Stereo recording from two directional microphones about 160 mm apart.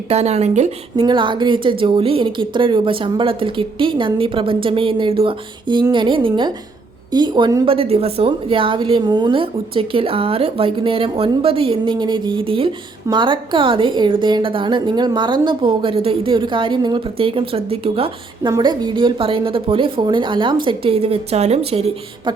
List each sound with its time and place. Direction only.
0.1 s speech: 40° right (ahead or behind)
1.0 s a woman's voice: 30° right (ahead or behind)